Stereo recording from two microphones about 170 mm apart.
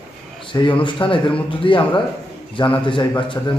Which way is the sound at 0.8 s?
30° left (ahead or behind).